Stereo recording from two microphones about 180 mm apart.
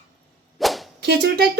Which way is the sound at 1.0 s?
70° right (ahead or behind).